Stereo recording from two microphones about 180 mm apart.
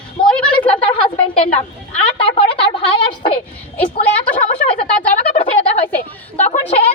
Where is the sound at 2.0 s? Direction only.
30° left (ahead or behind).